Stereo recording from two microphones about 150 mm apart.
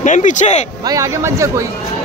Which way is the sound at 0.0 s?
55° left (ahead or behind).